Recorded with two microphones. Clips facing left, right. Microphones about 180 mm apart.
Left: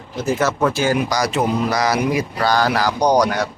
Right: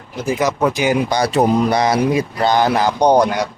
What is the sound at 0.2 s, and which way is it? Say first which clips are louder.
Speech: right 1 dB; 10° right (ahead or behind).